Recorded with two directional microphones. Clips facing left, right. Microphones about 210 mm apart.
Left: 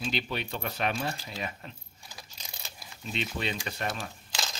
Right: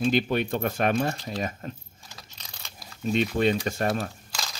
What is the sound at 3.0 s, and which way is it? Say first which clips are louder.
Speech: right 11 dB; 50° right (ahead or behind).